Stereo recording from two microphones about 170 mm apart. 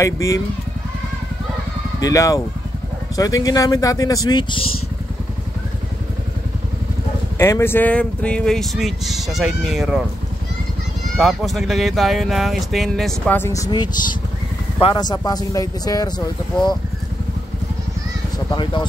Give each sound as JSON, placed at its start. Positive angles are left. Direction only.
{"t": 0.0, "sound": "speech", "side_deg": 20}
{"t": 2.0, "sound": "speech", "side_deg": 20}
{"t": 7.3, "sound": "speech", "side_deg": 15}
{"t": 11.1, "sound": "speech", "side_deg": 0}
{"t": 18.5, "sound": "speech", "side_deg": 25}